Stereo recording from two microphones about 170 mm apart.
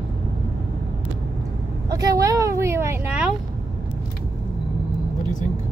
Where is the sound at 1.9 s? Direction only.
20° right (ahead or behind).